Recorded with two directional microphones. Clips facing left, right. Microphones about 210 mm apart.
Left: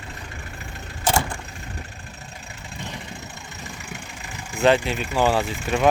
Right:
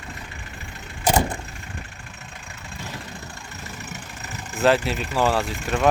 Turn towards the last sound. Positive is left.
turn(degrees=5)  # may be behind; listen again after turning